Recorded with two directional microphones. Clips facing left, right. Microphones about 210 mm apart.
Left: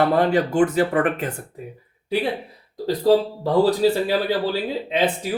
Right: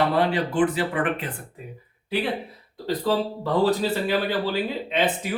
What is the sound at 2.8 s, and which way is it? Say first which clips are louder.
Speech: left 6 dB; 40° left (ahead or behind).